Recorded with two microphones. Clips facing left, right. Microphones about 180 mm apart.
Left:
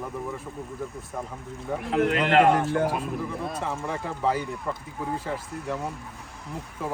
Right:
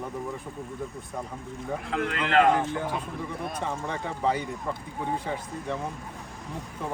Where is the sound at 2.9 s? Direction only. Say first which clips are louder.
Left 3 dB; centre (ahead or behind).